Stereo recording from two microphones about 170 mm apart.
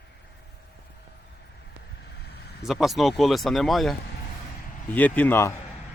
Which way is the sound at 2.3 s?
70° left (ahead or behind).